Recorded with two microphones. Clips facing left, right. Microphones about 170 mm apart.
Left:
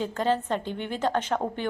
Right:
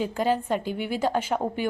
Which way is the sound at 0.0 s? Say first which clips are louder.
Right 1 dB; 10° right (ahead or behind).